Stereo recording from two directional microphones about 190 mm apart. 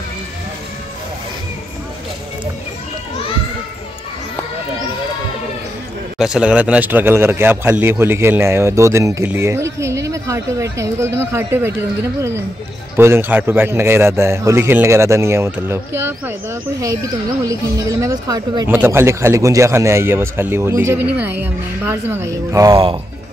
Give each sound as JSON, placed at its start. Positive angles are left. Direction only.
{"t": 6.1, "sound": "a man's voice", "side_deg": -5}